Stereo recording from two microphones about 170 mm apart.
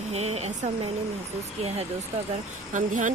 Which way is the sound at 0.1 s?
40° right (ahead or behind).